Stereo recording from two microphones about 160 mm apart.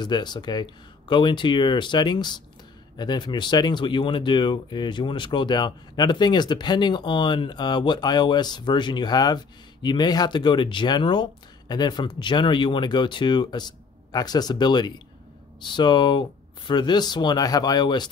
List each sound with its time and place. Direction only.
0.0 s speech: 25° left (ahead or behind)